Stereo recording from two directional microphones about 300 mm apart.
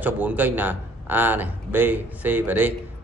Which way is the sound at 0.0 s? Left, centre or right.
Centre.